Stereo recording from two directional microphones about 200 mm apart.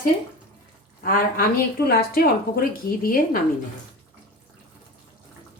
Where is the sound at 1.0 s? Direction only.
45° left (ahead or behind).